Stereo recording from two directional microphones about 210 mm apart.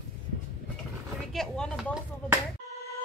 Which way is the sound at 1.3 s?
5° left (ahead or behind).